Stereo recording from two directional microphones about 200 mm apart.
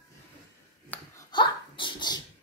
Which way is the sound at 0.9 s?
20° left (ahead or behind).